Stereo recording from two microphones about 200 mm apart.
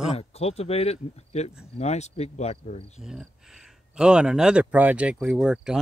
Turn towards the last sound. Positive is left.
turn(degrees=-5)  # may be behind; listen again after turning